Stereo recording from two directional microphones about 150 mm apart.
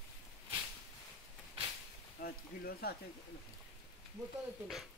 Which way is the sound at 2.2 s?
90° left.